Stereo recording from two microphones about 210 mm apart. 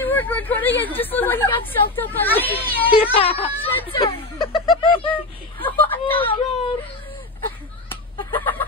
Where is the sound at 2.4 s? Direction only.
25° left (ahead or behind).